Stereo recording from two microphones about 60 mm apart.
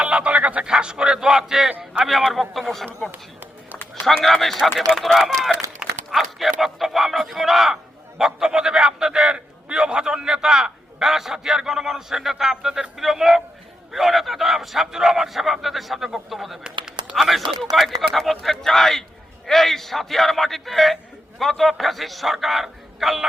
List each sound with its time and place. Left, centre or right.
0.0 s a sound: centre
0.6 s a man's voice: centre
3.1 s a sound: right
4.2 s a man's voice: centre
16.6 s typing: centre
17.2 s a man's voice: centre